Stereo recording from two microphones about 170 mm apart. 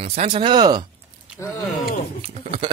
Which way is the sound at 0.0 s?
35° right (ahead or behind).